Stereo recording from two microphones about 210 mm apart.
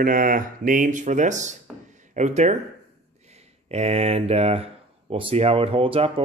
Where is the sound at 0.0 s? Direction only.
40° right (ahead or behind).